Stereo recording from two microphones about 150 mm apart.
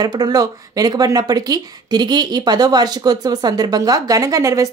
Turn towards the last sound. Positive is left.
turn(degrees=-20)  # may be behind; listen again after turning